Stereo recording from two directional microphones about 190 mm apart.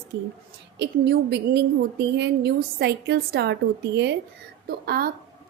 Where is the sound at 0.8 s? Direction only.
60° right (ahead or behind).